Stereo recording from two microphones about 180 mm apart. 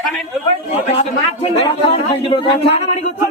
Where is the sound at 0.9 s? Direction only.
40° left (ahead or behind).